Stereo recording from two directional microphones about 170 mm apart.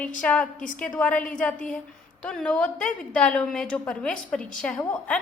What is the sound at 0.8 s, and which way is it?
A woman's voice, 5° left (ahead or behind).